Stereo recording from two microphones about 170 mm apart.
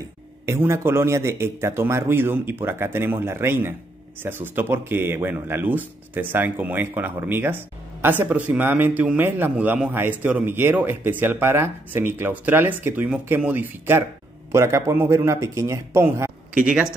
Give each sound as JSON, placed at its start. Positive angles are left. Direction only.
{"t": 0.5, "sound": "speech", "side_deg": -15}